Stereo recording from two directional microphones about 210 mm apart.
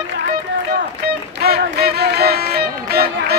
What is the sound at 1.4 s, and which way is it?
Music, 50° right (ahead or behind).